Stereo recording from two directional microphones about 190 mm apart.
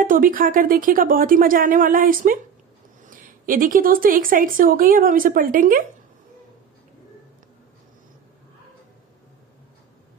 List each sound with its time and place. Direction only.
0.0 s a woman's voice: 45° right (ahead or behind)